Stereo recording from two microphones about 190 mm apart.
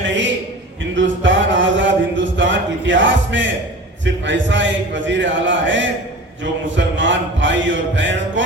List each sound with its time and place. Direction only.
0.9 s a sound: 75° right (ahead or behind)
4.0 s a man's voice: 75° right (ahead or behind)
6.4 s mantra: 75° right (ahead or behind)